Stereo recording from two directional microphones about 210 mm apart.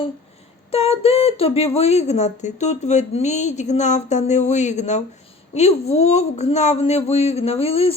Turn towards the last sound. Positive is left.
turn(degrees=30)  # may be behind; listen again after turning